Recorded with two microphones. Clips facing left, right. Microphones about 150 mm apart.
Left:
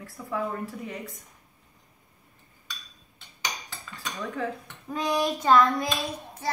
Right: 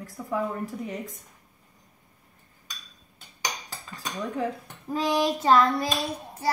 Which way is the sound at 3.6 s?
40° right (ahead or behind).